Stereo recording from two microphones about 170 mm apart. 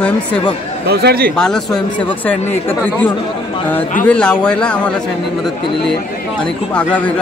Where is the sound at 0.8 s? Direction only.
65° right (ahead or behind).